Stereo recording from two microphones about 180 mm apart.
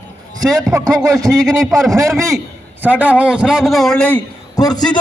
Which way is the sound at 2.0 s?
15° right (ahead or behind).